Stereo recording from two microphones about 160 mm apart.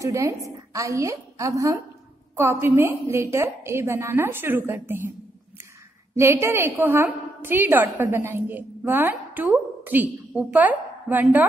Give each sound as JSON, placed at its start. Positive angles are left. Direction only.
{"t": 0.0, "sound": "a woman's voice", "side_deg": -20}
{"t": 6.1, "sound": "a woman's voice", "side_deg": -15}